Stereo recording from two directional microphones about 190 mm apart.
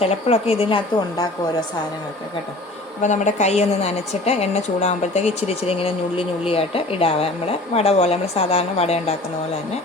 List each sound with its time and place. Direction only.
0.0 s a woman's voice: 30° left (ahead or behind)
3.0 s a woman's voice: 40° left (ahead or behind)